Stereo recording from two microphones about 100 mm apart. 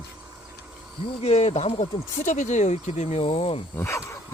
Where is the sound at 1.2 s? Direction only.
90° left.